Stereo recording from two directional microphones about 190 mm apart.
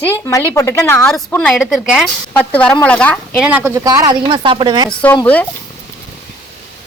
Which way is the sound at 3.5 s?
10° right (ahead or behind).